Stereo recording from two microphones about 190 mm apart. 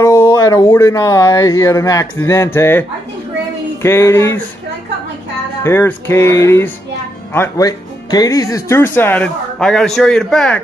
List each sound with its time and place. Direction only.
0.0 s speech: 15° left (ahead or behind)
3.8 s speech: 15° left (ahead or behind)
5.6 s speech: 15° left (ahead or behind)